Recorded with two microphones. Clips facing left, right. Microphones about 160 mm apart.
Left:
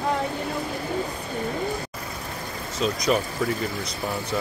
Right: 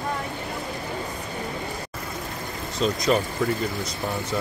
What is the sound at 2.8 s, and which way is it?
Speech, 5° left (ahead or behind).